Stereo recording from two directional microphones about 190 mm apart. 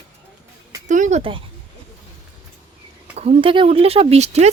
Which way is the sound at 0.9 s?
40° right (ahead or behind).